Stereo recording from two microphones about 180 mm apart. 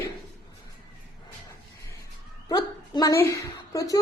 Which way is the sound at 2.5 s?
20° left (ahead or behind).